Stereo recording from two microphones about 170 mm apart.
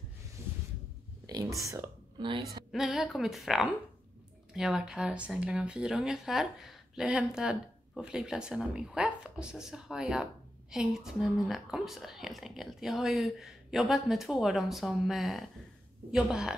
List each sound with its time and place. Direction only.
0.4 s a sound: 15° right (ahead or behind)
1.6 s speech: 20° right (ahead or behind)
2.7 s speech: centre (ahead or behind)